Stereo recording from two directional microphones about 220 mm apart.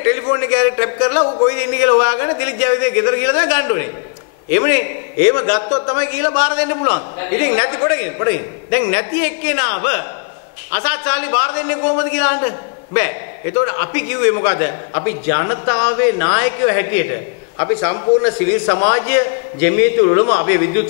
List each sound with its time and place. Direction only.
0.0 s a man's voice: 15° left (ahead or behind)